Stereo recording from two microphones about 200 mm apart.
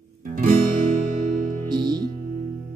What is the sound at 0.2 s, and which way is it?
Music, 45° right (ahead or behind).